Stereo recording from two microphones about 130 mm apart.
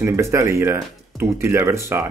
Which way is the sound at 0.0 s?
20° right (ahead or behind).